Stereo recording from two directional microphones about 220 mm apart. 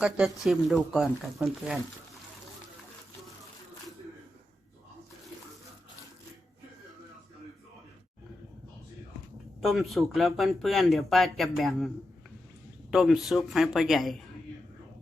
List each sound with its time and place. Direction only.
0.0 s speech: centre (ahead or behind)
9.6 s speech: centre (ahead or behind)
12.9 s speech: centre (ahead or behind)